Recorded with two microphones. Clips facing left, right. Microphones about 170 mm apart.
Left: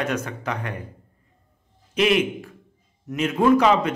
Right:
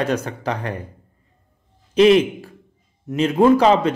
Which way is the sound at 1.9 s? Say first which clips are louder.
Right 7 dB; 30° right (ahead or behind).